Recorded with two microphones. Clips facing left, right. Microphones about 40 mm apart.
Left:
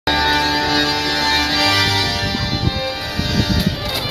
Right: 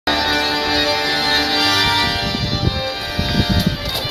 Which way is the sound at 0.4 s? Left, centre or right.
Centre.